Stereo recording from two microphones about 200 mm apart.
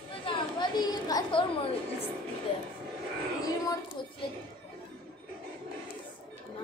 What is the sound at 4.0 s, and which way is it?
Speech, 25° left (ahead or behind).